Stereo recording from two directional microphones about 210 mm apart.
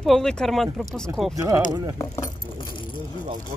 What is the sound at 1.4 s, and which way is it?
Speech, 15° right (ahead or behind).